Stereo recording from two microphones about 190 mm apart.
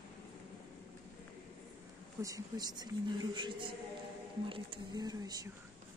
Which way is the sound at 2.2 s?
20° right (ahead or behind).